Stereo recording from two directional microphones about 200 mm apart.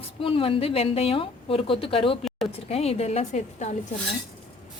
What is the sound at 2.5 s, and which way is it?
A woman's voice, 30° left (ahead or behind).